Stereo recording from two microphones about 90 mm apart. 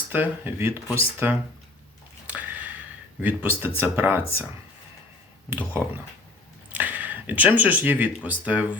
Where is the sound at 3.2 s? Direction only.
20° right (ahead or behind).